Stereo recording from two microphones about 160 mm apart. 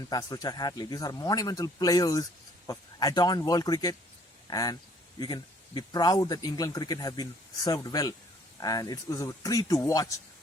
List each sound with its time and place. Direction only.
0.1 s speech: 25° left (ahead or behind)